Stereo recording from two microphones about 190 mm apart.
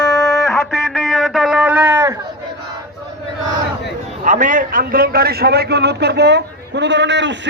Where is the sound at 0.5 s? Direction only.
Centre (ahead or behind).